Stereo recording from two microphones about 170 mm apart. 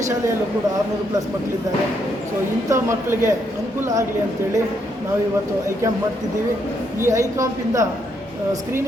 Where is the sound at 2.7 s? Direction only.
15° right (ahead or behind).